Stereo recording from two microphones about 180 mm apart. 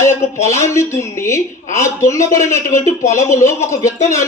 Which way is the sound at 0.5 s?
15° left (ahead or behind).